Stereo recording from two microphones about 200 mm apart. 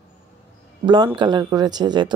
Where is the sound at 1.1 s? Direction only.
20° right (ahead or behind).